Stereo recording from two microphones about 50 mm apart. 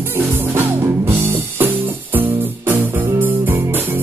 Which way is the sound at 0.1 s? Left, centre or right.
Right.